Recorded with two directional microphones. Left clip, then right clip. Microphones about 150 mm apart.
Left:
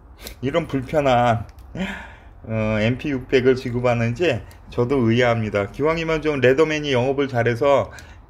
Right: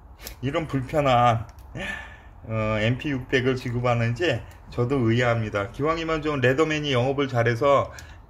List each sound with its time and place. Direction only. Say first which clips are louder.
0.4 s speech: left 5 dB; 40° left (ahead or behind); by 7.8 s 25° left (ahead or behind)